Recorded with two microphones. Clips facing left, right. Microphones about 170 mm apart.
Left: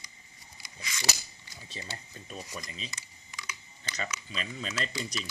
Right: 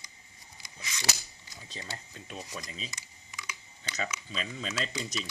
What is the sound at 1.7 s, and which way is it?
Speech, 5° left (ahead or behind).